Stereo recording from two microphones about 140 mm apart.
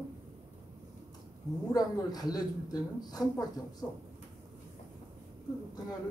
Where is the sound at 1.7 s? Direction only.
25° left (ahead or behind).